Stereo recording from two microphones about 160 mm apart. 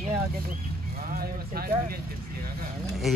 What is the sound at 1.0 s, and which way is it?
Speech, 65° right (ahead or behind).